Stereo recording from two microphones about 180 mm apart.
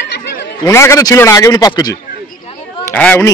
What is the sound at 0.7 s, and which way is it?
A man's voice, 15° left (ahead or behind).